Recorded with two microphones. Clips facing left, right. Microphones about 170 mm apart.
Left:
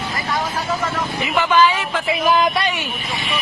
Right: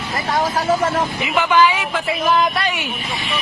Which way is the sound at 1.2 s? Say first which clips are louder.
Left 1 dB; 15° right (ahead or behind).